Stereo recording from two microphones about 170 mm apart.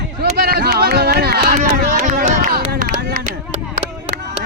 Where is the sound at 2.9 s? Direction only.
65° right (ahead or behind).